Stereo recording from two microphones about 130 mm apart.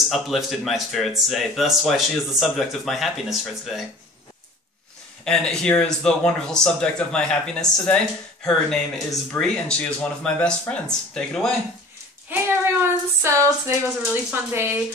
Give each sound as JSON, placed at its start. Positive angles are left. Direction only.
{"t": 0.1, "sound": "speech", "side_deg": 0}
{"t": 5.2, "sound": "speech", "side_deg": 5}
{"t": 12.3, "sound": "speech", "side_deg": -15}